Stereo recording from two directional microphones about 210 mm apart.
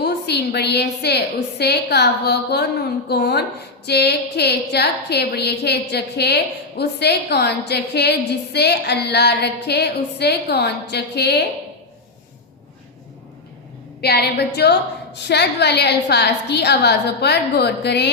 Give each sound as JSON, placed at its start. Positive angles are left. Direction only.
{"t": 0.0, "sound": "a woman's voice", "side_deg": 50}
{"t": 14.0, "sound": "a woman's voice", "side_deg": 50}